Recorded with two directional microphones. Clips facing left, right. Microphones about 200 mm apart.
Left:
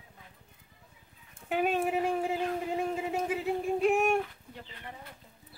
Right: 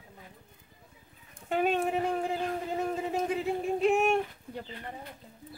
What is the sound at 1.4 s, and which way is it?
A man's voice, 5° left (ahead or behind).